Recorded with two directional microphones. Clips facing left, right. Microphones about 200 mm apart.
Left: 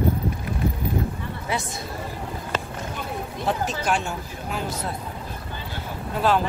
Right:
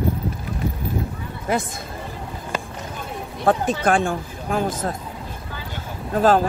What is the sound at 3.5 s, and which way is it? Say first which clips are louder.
Speech: right 6 dB; 50° right (ahead or behind).